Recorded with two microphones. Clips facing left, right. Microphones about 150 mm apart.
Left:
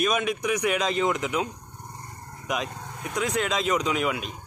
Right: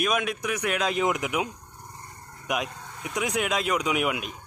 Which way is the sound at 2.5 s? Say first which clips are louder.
Even; 10° right (ahead or behind).